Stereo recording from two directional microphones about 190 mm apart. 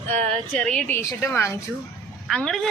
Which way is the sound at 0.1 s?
35° right (ahead or behind).